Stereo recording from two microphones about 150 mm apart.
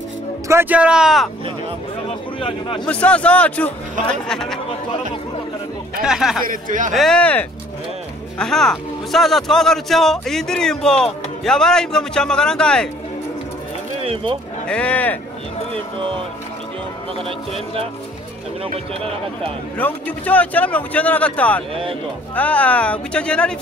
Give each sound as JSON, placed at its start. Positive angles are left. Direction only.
{"t": 0.5, "sound": "speech", "side_deg": -15}
{"t": 2.0, "sound": "a man's voice", "side_deg": 35}
{"t": 2.9, "sound": "speech", "side_deg": 10}
{"t": 6.0, "sound": "speech", "side_deg": -5}
{"t": 6.4, "sound": "speech", "side_deg": -65}
{"t": 6.9, "sound": "speech", "side_deg": 5}
{"t": 14.0, "sound": "speech", "side_deg": -35}
{"t": 14.7, "sound": "speech", "side_deg": 10}
{"t": 19.8, "sound": "speech", "side_deg": 10}